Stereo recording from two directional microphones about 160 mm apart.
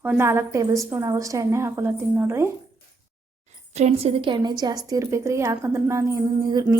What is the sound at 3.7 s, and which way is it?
A woman's voice, 45° right (ahead or behind).